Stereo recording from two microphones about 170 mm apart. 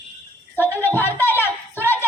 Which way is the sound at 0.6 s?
10° left (ahead or behind).